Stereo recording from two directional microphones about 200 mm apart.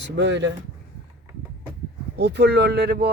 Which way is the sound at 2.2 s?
55° right (ahead or behind).